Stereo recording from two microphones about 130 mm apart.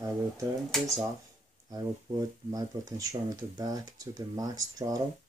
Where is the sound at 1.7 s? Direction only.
25° right (ahead or behind).